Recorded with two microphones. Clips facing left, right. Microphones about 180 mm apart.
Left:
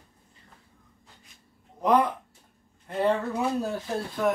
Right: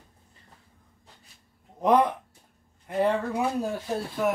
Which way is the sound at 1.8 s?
20° right (ahead or behind).